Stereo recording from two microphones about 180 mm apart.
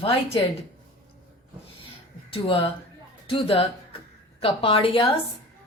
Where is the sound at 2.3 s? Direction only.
30° left (ahead or behind).